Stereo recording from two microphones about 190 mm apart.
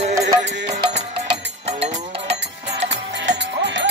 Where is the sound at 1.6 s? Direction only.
30° right (ahead or behind).